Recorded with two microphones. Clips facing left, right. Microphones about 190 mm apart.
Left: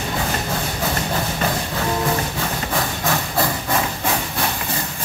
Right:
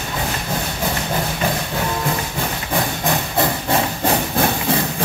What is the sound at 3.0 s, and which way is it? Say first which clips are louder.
Hiss: right 1 dB; 20° right (ahead or behind).